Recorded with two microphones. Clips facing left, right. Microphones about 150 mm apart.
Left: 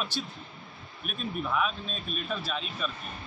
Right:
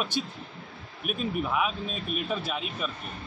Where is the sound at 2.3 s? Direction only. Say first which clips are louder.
Right 3 dB; 15° right (ahead or behind).